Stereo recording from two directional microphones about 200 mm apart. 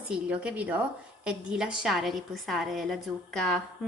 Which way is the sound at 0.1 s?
5° right (ahead or behind).